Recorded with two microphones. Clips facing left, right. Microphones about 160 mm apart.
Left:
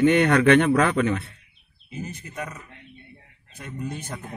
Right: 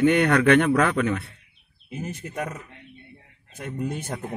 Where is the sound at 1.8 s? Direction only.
70° right (ahead or behind).